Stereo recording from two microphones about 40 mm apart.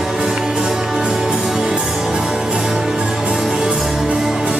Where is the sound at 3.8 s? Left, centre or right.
Centre.